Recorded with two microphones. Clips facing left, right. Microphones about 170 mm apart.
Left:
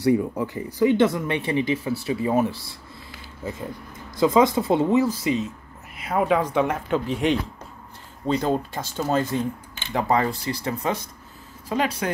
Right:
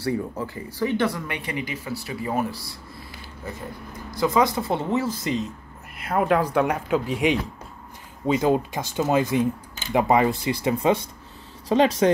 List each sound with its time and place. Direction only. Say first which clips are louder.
0.0 s speech: left 6 dB; 20° left (ahead or behind)
4.2 s speech: left 3 dB; 20° left (ahead or behind); by 7.3 s 5° right (ahead or behind)
8.4 s speech: right 5 dB; 10° right (ahead or behind)
11.7 s speech: right 6 dB; 30° right (ahead or behind)